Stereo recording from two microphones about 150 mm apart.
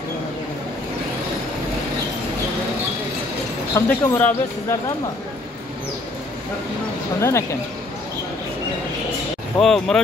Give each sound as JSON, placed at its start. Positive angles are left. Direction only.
{"t": 3.7, "sound": "speech", "side_deg": 20}
{"t": 7.2, "sound": "speech", "side_deg": 20}
{"t": 9.6, "sound": "speech", "side_deg": 5}